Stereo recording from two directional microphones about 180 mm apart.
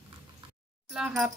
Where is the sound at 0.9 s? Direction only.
5° right (ahead or behind).